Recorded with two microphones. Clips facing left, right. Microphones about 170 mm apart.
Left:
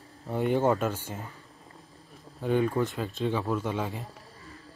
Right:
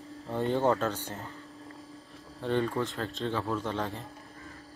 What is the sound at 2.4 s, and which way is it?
A man's voice, 10° left (ahead or behind).